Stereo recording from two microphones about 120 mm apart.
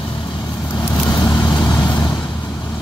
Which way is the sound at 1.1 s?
20° left (ahead or behind).